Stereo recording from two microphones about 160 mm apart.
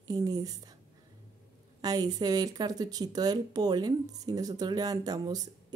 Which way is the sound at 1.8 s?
25° right (ahead or behind).